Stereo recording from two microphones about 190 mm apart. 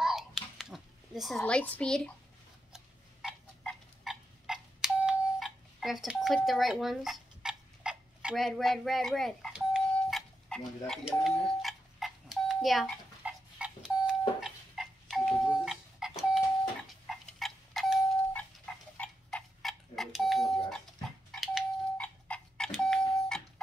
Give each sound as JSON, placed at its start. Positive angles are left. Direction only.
{"t": 0.0, "sound": "a sound", "side_deg": 0}
{"t": 17.4, "sound": "clock", "side_deg": 0}
{"t": 18.9, "sound": "alarm clock", "side_deg": 5}
{"t": 21.3, "sound": "doorbell", "side_deg": 0}